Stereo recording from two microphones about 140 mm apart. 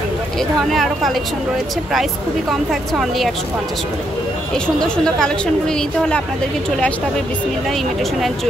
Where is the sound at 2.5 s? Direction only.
Centre (ahead or behind).